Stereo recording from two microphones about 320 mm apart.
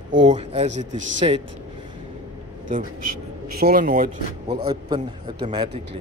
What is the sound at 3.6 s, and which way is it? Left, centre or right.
Speech, right.